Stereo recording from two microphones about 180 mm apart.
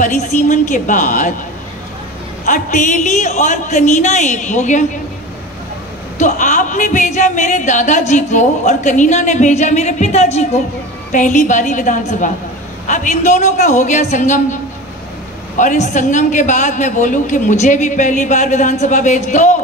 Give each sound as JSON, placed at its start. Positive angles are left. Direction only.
{"t": 0.0, "sound": "a woman's voice", "side_deg": 45}
{"t": 2.4, "sound": "a woman's voice", "side_deg": 45}
{"t": 6.1, "sound": "a woman's voice", "side_deg": 45}